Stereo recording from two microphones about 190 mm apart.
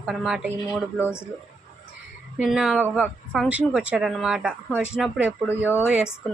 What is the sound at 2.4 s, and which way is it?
A woman's voice, 5° right (ahead or behind).